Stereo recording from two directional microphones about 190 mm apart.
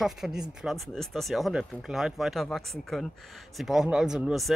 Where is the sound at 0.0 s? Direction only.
Centre (ahead or behind).